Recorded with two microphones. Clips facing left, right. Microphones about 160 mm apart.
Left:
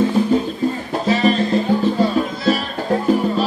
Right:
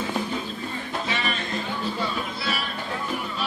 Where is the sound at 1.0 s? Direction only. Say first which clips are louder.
Left 17 dB; 35° left (ahead or behind).